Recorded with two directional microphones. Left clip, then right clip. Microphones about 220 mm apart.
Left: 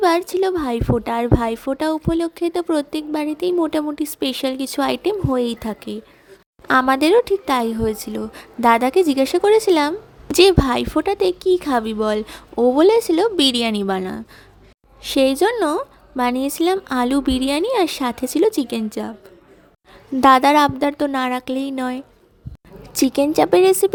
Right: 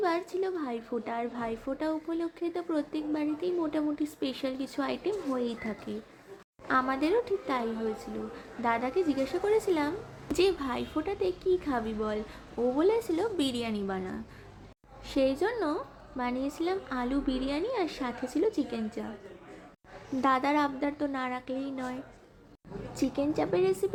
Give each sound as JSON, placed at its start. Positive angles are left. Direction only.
{"t": 0.0, "sound": "a woman's voice", "side_deg": 45}
{"t": 20.2, "sound": "a woman's voice", "side_deg": 45}